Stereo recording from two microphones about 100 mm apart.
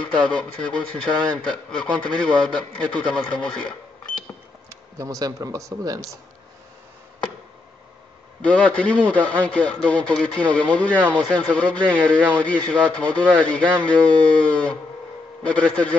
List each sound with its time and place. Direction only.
0.1 s a man's voice: 10° left (ahead or behind)
4.6 s speech: 35° right (ahead or behind)
8.4 s a man's voice: 10° left (ahead or behind)